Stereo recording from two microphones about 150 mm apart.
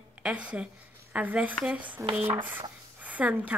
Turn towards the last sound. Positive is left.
turn(degrees=-10)  # may be behind; listen again after turning